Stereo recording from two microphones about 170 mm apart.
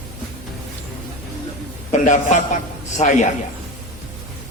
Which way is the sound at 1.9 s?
45° left (ahead or behind).